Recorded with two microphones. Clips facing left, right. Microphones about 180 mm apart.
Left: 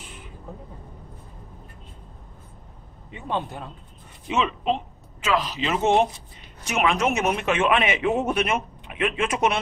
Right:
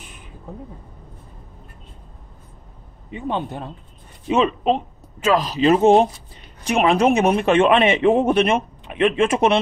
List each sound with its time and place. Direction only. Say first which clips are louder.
3.1 s a man's voice: right 4 dB; 20° right (ahead or behind)
4.3 s a man's voice: right 6 dB; 40° right (ahead or behind)